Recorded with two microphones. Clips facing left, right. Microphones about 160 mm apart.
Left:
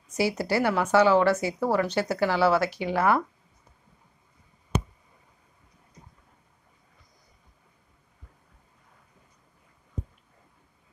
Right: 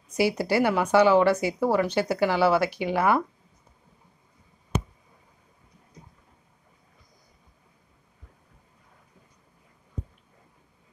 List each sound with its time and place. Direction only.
0.3 s a woman's voice: 25° right (ahead or behind)
0.6 s speech: 15° right (ahead or behind)